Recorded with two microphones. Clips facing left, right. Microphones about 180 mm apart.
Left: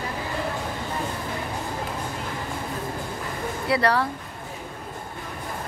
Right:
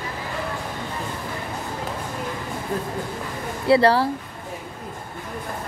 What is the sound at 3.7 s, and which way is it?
Speech, 30° right (ahead or behind).